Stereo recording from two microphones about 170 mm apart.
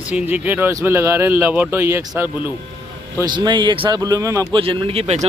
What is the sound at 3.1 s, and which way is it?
A man's voice, 25° right (ahead or behind).